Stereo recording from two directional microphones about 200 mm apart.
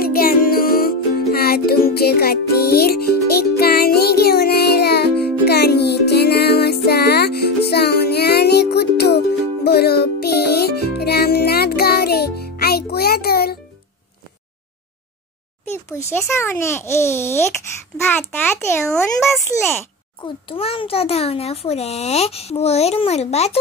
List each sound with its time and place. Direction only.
0.0 s music: 50° left (ahead or behind)
16.3 s a child's voice: 10° left (ahead or behind)
19.2 s speech: centre (ahead or behind)
20.4 s a child's voice: 25° left (ahead or behind)